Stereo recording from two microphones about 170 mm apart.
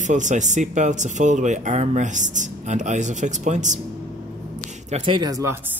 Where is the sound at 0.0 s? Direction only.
45° right (ahead or behind).